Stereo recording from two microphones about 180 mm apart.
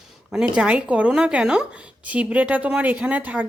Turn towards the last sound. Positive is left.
turn(degrees=-10)  # may be behind; listen again after turning